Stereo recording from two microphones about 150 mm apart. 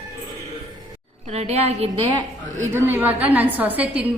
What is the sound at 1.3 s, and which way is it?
Speech, 45° right (ahead or behind).